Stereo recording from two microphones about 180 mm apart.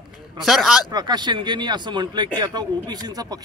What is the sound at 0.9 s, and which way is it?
A man's voice, 25° right (ahead or behind).